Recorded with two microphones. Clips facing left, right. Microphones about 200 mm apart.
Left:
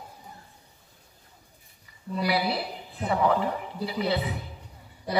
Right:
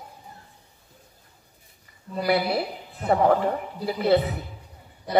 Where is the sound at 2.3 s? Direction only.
50° right (ahead or behind).